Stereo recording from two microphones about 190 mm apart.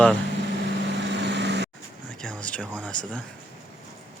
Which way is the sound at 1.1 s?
60° right (ahead or behind).